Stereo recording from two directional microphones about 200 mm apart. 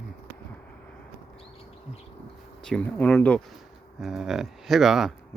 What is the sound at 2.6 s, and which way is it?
Speech, 5° left (ahead or behind).